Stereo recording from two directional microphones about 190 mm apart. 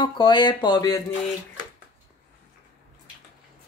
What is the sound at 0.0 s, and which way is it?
Speech, 25° left (ahead or behind).